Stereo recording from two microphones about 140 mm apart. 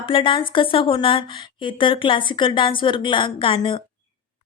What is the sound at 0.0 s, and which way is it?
A woman's voice, 35° left (ahead or behind).